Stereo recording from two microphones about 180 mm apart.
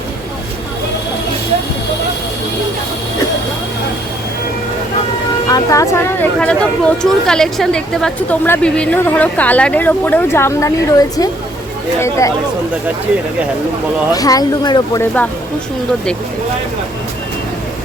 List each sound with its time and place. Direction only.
5.5 s speech: 20° left (ahead or behind)
14.1 s speech: 20° left (ahead or behind)
15.0 s speech: 10° left (ahead or behind)